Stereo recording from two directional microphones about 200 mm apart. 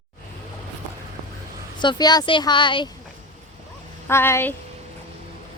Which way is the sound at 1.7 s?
20° left (ahead or behind).